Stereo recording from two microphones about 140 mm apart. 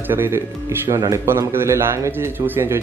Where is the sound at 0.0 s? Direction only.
15° right (ahead or behind).